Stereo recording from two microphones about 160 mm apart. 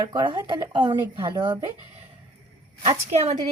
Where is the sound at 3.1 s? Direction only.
45° right (ahead or behind).